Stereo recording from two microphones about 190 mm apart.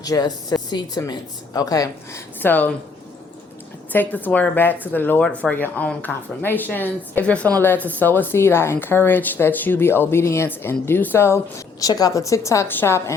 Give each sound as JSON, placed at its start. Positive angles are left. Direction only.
{"t": 0.0, "sound": "speech", "side_deg": 20}
{"t": 3.9, "sound": "a woman's voice", "side_deg": 10}